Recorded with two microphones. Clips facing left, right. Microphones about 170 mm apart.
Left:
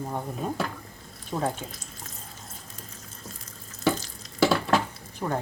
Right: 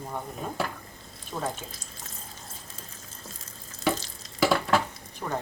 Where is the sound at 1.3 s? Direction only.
20° left (ahead or behind).